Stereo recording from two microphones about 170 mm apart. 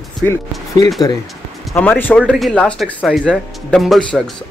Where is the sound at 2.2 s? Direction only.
5° right (ahead or behind).